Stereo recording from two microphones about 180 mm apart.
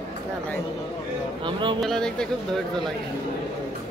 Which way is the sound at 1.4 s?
25° right (ahead or behind).